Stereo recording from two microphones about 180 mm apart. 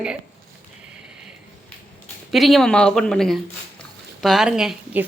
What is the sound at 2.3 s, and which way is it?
A woman's voice, centre (ahead or behind).